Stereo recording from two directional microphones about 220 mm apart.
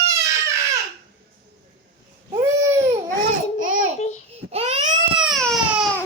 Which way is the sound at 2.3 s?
10° right (ahead or behind).